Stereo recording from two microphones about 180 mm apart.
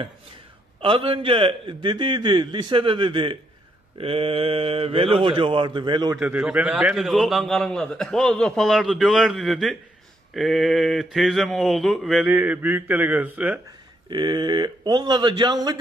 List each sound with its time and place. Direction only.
0.7 s a man's voice: 30° right (ahead or behind)
6.1 s a man's voice: 5° right (ahead or behind)
14.1 s a man's voice: 25° right (ahead or behind)